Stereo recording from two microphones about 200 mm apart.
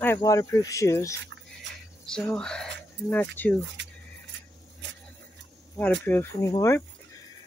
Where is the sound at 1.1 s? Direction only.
65° right (ahead or behind).